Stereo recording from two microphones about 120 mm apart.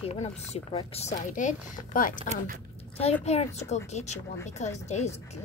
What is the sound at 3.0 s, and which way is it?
Speech, 60° left (ahead or behind).